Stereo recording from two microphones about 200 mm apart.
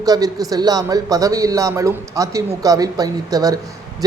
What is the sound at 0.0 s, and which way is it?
A man's voice, 20° right (ahead or behind).